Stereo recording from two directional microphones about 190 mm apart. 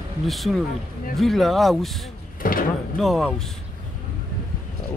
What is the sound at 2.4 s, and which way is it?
Speech, 45° left (ahead or behind).